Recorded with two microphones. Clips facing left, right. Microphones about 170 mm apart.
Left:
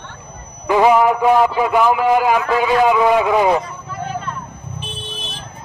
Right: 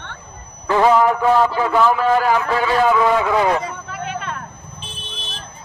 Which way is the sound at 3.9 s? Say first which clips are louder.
Left 4 dB; 90° right.